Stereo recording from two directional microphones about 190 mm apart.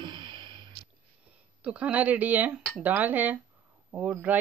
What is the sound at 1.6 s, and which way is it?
Speech, 5° right (ahead or behind).